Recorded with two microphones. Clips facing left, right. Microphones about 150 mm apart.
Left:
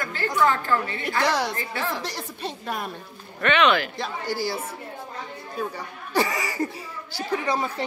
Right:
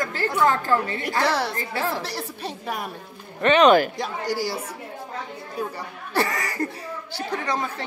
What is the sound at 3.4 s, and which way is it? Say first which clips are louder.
Speech: right 5 dB; 40° right (ahead or behind).